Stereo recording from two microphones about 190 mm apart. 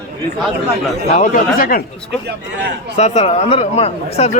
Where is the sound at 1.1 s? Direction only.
40° left (ahead or behind).